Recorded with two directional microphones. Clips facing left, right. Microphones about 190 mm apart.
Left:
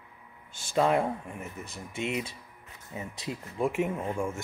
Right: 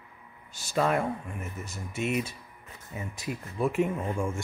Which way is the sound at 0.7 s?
20° left (ahead or behind).